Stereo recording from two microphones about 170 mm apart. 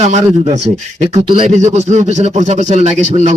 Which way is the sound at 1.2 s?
30° right (ahead or behind).